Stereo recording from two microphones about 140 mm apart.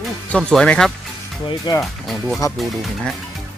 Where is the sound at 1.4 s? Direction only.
30° left (ahead or behind).